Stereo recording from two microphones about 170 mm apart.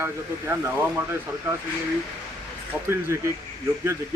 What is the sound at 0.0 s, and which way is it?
Speech, 15° right (ahead or behind).